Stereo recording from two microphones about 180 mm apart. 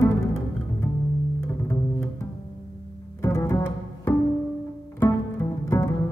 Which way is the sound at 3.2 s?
15° left (ahead or behind).